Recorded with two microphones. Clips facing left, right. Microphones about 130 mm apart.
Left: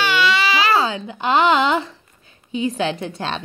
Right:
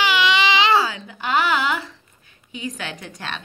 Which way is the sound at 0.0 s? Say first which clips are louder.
Even; 15° right (ahead or behind).